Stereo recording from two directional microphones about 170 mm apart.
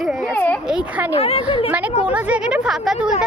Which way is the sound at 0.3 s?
10° left (ahead or behind).